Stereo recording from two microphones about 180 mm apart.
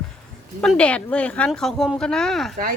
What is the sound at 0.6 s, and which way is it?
Speech, 5° left (ahead or behind).